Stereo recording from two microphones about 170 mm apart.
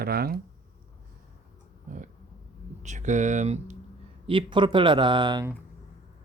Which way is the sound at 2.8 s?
45° right (ahead or behind).